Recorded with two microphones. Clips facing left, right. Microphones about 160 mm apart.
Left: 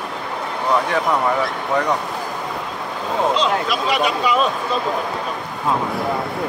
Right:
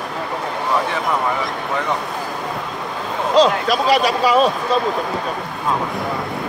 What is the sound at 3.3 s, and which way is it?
Speech, 40° right (ahead or behind).